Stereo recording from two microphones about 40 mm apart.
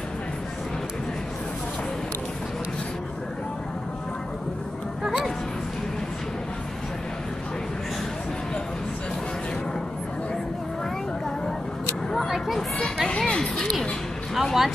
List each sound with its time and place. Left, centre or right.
5.0 s music: centre
13.2 s music: centre
14.3 s a sound: centre